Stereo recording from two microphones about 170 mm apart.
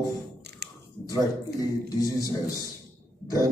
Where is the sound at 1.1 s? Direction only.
20° left (ahead or behind).